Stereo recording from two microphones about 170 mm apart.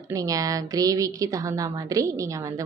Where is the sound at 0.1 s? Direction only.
20° right (ahead or behind).